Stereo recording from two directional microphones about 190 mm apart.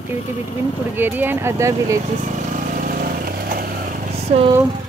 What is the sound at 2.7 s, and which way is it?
Vehicle, 45° right (ahead or behind).